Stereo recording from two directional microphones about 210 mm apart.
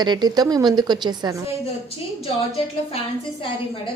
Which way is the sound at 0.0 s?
20° right (ahead or behind).